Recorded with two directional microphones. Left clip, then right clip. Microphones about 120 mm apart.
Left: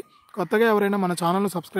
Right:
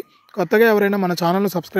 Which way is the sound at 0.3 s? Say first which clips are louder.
Right 5 dB; 15° right (ahead or behind).